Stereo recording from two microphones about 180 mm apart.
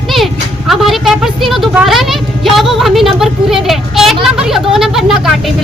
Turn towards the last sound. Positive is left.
turn(degrees=0)  # may be behind; listen again after turning